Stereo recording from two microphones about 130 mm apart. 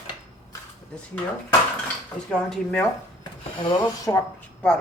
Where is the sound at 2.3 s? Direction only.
5° left (ahead or behind).